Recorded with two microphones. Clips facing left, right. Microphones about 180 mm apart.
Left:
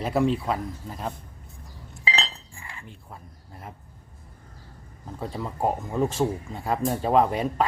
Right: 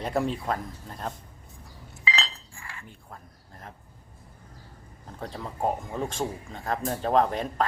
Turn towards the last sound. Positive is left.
turn(degrees=10)  # may be behind; listen again after turning